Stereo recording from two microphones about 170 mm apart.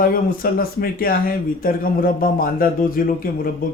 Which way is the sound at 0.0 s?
55° left (ahead or behind).